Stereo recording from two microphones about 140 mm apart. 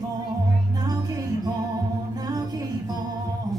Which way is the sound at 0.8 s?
25° right (ahead or behind).